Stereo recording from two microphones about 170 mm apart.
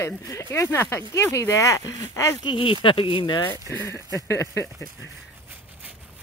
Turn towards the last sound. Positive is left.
turn(degrees=15)  # may be behind; listen again after turning